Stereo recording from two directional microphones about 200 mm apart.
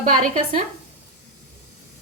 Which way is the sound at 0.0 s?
40° right (ahead or behind).